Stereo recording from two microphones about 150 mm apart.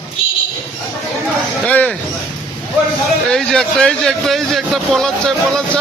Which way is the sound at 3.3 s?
5° left (ahead or behind).